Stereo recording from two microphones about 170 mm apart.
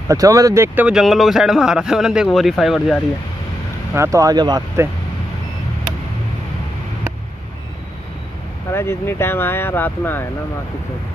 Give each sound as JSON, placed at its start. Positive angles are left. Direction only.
{"t": 0.1, "sound": "speech", "side_deg": -20}
{"t": 3.9, "sound": "speech", "side_deg": -15}
{"t": 8.7, "sound": "speech", "side_deg": 15}